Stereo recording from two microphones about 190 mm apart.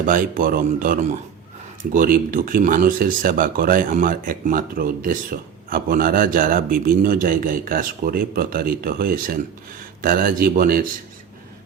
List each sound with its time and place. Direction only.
0.0 s speech: 45° right (ahead or behind)